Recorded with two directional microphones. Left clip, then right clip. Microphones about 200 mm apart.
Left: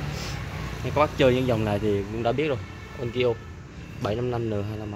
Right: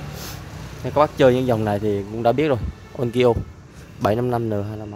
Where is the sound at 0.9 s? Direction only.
25° right (ahead or behind).